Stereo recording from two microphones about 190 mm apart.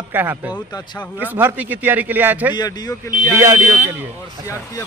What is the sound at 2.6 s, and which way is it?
Speech, 20° left (ahead or behind).